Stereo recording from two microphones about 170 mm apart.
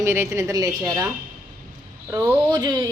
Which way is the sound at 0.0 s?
15° right (ahead or behind).